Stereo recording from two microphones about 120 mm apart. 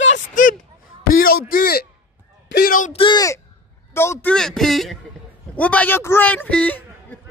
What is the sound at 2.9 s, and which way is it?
Speech, 40° left (ahead or behind).